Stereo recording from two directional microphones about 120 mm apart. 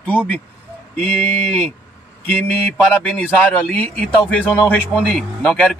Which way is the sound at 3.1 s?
15° left (ahead or behind).